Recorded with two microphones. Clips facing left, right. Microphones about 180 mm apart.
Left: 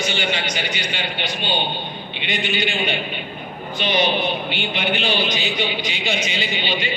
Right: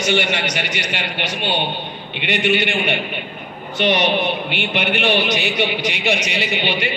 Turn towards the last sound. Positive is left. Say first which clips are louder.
# right 3 dB
turn(degrees=-70)  # may be behind; listen again after turning